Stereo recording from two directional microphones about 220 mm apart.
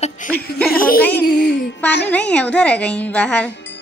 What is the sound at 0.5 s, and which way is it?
Speech, 5° left (ahead or behind).